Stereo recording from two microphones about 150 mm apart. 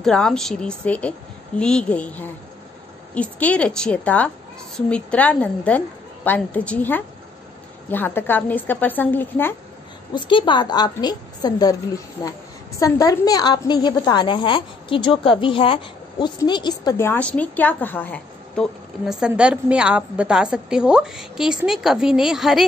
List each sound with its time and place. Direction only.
0.0 s a woman's voice: 5° left (ahead or behind)
10.1 s a woman's voice: 30° left (ahead or behind)
12.7 s a woman's voice: 20° left (ahead or behind)
16.9 s a woman's voice: 15° left (ahead or behind); by 22.7 s centre (ahead or behind)